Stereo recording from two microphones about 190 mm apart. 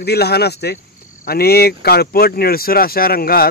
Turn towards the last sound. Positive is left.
turn(degrees=50)  # may be behind; listen again after turning